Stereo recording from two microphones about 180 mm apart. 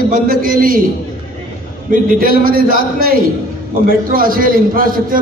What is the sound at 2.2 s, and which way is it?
A man's voice, 55° right (ahead or behind).